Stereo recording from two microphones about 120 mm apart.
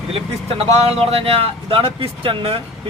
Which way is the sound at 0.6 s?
55° right (ahead or behind).